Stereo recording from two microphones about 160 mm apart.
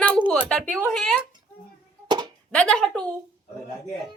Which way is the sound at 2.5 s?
5° left (ahead or behind).